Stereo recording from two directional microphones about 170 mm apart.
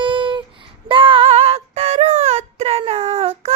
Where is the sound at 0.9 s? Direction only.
30° right (ahead or behind).